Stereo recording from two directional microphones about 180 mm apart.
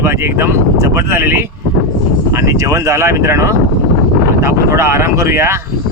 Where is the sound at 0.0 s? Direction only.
15° right (ahead or behind).